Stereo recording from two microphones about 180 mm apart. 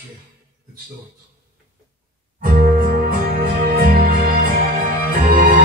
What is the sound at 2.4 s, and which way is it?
Music, 55° right (ahead or behind).